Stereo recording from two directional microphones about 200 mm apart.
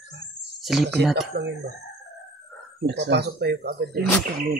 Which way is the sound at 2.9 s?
55° right (ahead or behind).